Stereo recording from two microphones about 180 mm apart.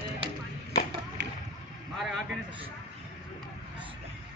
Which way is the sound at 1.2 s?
70° right (ahead or behind).